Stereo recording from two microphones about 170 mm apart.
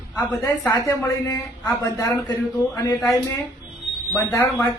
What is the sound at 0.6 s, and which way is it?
Speech, 15° left (ahead or behind).